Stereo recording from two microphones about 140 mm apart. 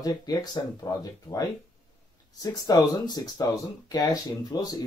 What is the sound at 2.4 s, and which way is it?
Speech, 25° left (ahead or behind).